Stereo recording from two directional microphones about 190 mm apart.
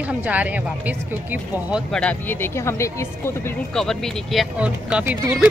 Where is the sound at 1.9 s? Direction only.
5° left (ahead or behind).